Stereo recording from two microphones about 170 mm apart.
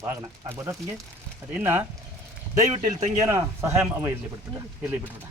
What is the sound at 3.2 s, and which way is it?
Speech, 20° right (ahead or behind).